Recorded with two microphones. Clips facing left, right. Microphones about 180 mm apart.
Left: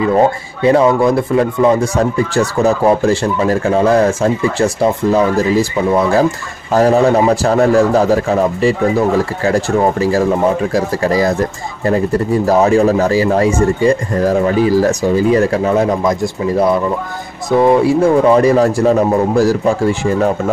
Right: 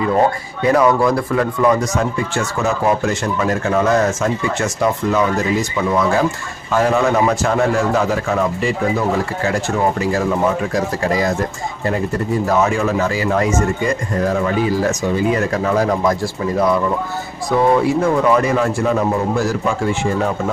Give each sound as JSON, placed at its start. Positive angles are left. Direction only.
{"t": 0.7, "sound": "speech", "side_deg": 25}
{"t": 12.4, "sound": "speech", "side_deg": 35}